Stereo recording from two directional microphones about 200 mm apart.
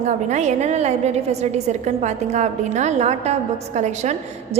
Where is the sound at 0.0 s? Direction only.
35° right (ahead or behind).